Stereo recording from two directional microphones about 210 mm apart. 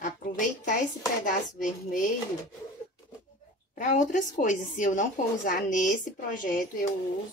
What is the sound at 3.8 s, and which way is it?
A woman's voice, 35° left (ahead or behind).